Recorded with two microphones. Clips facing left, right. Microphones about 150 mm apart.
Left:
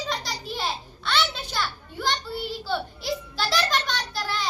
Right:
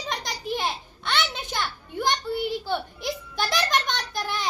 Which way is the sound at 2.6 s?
15° right (ahead or behind).